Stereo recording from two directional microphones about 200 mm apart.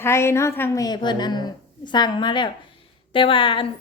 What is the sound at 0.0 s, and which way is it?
A woman's voice, 15° left (ahead or behind).